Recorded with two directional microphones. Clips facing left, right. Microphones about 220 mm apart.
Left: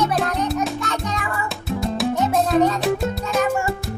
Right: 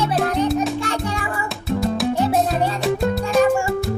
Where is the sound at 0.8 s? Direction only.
30° right (ahead or behind).